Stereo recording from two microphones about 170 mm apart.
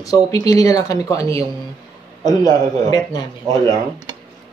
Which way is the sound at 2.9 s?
20° left (ahead or behind).